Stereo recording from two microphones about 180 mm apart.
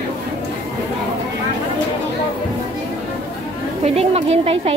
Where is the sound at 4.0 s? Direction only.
35° right (ahead or behind).